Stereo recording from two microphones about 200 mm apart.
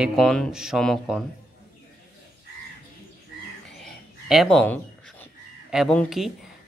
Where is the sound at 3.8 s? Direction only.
Centre (ahead or behind).